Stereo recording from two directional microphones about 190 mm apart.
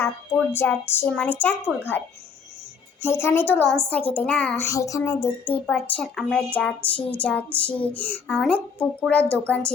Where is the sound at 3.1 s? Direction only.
15° left (ahead or behind).